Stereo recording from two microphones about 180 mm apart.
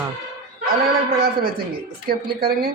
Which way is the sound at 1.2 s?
55° right (ahead or behind).